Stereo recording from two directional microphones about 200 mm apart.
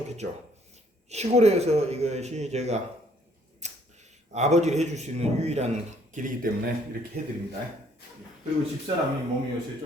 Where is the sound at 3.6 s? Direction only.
35° right (ahead or behind).